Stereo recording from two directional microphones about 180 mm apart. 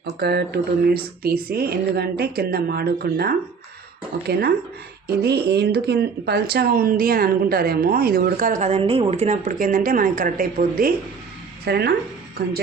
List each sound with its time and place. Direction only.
0.0 s speech: 65° right (ahead or behind)
11.6 s speech: 65° right (ahead or behind)